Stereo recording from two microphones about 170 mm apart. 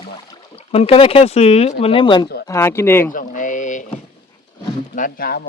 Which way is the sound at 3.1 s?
50° left (ahead or behind).